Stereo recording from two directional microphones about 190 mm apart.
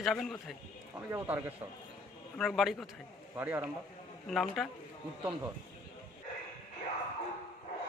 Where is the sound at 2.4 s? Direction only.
Centre (ahead or behind).